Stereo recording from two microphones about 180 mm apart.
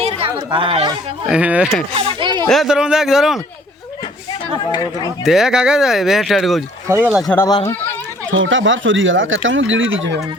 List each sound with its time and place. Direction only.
0.0 s speech: 30° right (ahead or behind)
1.3 s speech: 5° right (ahead or behind)
2.0 s speech: 25° right (ahead or behind)
2.5 s speech: centre (ahead or behind)
5.2 s speech: 5° right (ahead or behind)
6.8 s speech: 15° right (ahead or behind)
7.3 s speech: 20° left (ahead or behind)
8.3 s speech: 90° right